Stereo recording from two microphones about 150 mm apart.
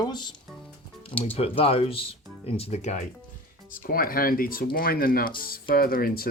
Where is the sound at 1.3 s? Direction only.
40° left (ahead or behind).